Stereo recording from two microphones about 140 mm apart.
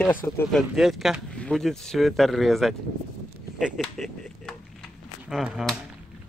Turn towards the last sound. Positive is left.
turn(degrees=0)  # may be behind; listen again after turning